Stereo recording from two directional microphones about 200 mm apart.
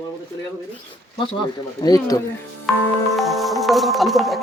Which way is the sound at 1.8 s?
20° left (ahead or behind).